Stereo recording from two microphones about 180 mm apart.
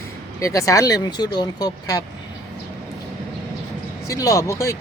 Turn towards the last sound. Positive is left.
turn(degrees=15)  # may be behind; listen again after turning